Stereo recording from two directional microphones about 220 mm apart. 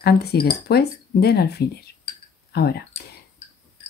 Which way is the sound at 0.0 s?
45° left (ahead or behind).